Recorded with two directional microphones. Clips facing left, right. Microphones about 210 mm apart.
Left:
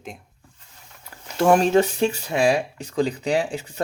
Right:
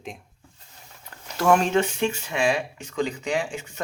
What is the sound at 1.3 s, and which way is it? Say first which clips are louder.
Speech: left 4 dB; 35° left (ahead or behind).